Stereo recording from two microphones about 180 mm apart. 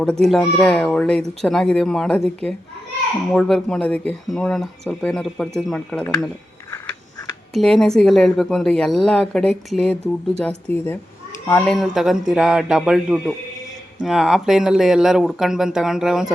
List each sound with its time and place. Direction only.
0.0 s speech: 5° left (ahead or behind)
7.5 s speech: centre (ahead or behind)